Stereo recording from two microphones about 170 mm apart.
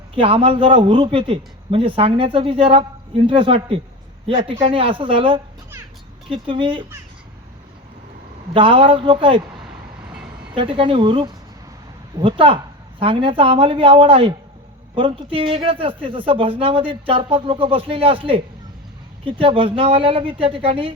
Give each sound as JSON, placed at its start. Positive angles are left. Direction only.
{"t": 0.1, "sound": "a man's voice", "side_deg": -30}
{"t": 8.5, "sound": "a man's voice", "side_deg": -30}
{"t": 10.5, "sound": "a man's voice", "side_deg": -30}